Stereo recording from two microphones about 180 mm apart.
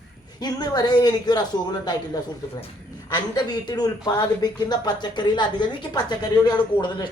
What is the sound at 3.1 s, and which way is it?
Speech, 20° left (ahead or behind).